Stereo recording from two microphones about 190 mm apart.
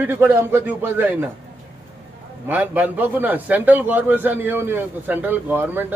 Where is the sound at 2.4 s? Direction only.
10° right (ahead or behind).